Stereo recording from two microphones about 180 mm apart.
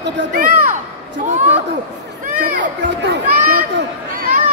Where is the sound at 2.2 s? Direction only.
45° right (ahead or behind).